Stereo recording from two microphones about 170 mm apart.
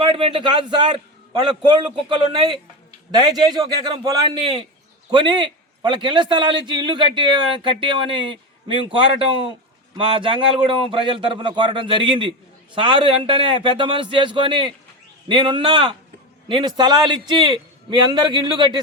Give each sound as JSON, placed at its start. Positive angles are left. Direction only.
{"t": 0.0, "sound": "a man's voice", "side_deg": -30}
{"t": 5.1, "sound": "a man's voice", "side_deg": -25}